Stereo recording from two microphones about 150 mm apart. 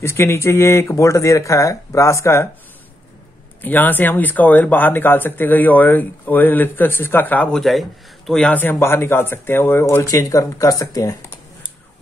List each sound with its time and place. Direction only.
0.0 s speech: 15° left (ahead or behind)
3.6 s speech: 10° left (ahead or behind)